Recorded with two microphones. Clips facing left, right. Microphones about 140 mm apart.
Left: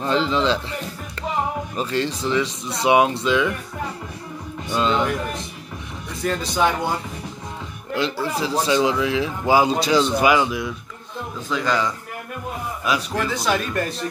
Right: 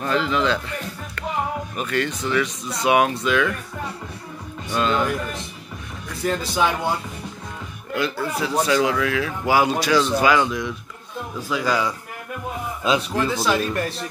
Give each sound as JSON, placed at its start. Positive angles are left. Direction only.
{"t": 0.0, "sound": "a man's voice", "side_deg": 30}
{"t": 1.8, "sound": "speech", "side_deg": 30}
{"t": 4.7, "sound": "speech", "side_deg": 20}
{"t": 6.2, "sound": "speech", "side_deg": -5}
{"t": 7.9, "sound": "speech", "side_deg": 30}
{"t": 11.4, "sound": "a man's voice", "side_deg": -10}
{"t": 12.8, "sound": "a man's voice", "side_deg": -25}
{"t": 13.3, "sound": "speech", "side_deg": -5}